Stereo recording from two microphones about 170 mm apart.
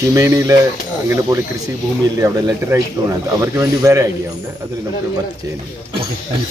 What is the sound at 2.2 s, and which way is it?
Speech, 20° right (ahead or behind).